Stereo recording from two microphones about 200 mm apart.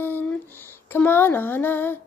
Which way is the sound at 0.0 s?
10° left (ahead or behind).